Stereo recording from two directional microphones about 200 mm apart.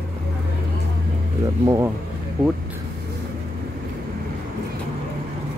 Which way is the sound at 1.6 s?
15° right (ahead or behind).